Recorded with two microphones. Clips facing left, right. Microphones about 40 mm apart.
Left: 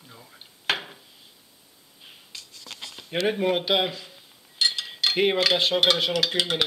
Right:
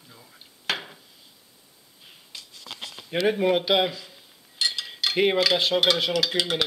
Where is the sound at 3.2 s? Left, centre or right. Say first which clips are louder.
Right 2 dB; centre.